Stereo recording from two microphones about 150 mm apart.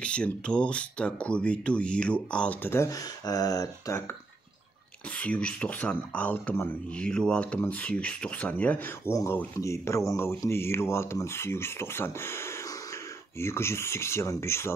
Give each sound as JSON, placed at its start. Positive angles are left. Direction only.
{"t": 0.0, "sound": "speech", "side_deg": 5}
{"t": 5.1, "sound": "speech", "side_deg": 10}